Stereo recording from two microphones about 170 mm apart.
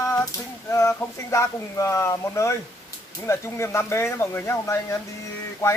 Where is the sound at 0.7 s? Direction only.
15° left (ahead or behind).